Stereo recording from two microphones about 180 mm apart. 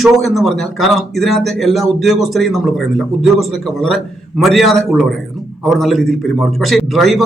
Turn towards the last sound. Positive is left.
turn(degrees=0)  # may be behind; listen again after turning